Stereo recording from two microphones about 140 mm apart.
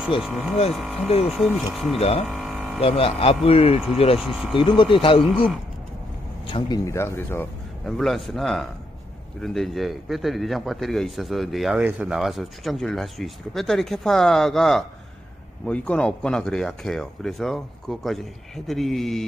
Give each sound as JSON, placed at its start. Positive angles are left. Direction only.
{"t": 0.2, "sound": "speech", "side_deg": 0}
{"t": 2.0, "sound": "speech", "side_deg": 45}
{"t": 2.2, "sound": "mains hum", "side_deg": 0}
{"t": 2.8, "sound": "speech", "side_deg": 45}
{"t": 4.2, "sound": "speech", "side_deg": -5}
{"t": 4.6, "sound": "speech", "side_deg": 40}
{"t": 6.8, "sound": "speech", "side_deg": 20}
{"t": 7.8, "sound": "speech", "side_deg": 0}